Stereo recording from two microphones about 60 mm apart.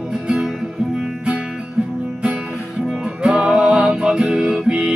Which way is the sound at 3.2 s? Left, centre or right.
Centre.